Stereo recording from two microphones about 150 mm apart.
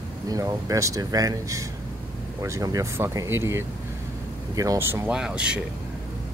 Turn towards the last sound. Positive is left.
turn(degrees=-5)  # may be behind; listen again after turning